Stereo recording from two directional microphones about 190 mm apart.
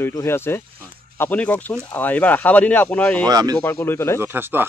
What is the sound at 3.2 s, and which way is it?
Speech, 20° right (ahead or behind).